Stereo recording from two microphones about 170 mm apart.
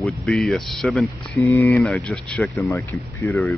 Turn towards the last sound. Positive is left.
turn(degrees=15)  # may be behind; listen again after turning